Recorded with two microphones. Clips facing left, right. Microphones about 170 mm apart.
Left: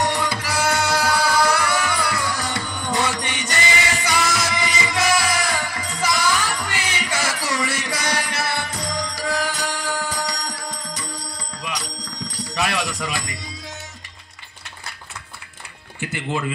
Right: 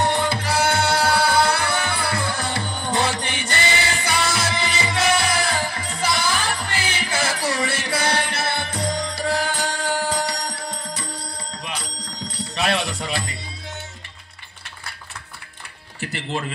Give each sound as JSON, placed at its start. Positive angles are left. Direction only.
{"t": 0.0, "sound": "music", "side_deg": -25}
{"t": 11.1, "sound": "bell", "side_deg": -30}